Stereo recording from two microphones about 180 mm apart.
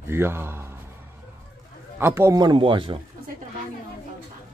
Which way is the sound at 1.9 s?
15° right (ahead or behind).